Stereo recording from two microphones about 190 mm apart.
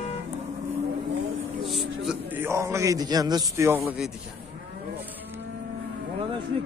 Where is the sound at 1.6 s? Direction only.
Centre (ahead or behind); by 3.8 s 15° right (ahead or behind).